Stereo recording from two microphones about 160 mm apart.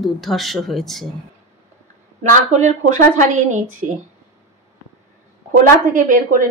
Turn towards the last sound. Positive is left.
turn(degrees=-55)  # may be behind; listen again after turning